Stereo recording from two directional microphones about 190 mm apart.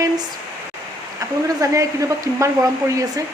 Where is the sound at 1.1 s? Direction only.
15° right (ahead or behind).